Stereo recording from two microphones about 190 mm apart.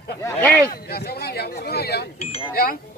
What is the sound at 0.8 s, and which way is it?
Speech, 55° left (ahead or behind).